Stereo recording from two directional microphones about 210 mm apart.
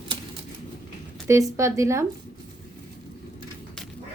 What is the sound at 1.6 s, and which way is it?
Speech, 15° right (ahead or behind).